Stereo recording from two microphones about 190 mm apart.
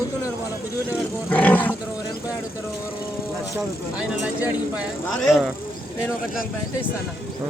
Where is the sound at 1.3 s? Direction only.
10° left (ahead or behind).